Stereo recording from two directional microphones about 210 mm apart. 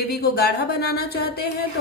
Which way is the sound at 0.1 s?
50° left (ahead or behind).